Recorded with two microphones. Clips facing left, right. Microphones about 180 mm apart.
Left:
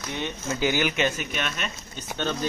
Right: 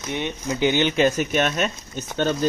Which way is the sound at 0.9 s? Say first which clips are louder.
Right 7 dB; 40° right (ahead or behind).